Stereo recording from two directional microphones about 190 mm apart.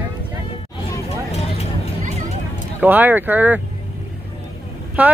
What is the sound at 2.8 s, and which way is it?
Speech, 10° right (ahead or behind).